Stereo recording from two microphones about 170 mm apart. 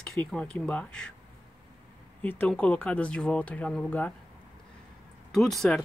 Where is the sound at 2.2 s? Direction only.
10° left (ahead or behind).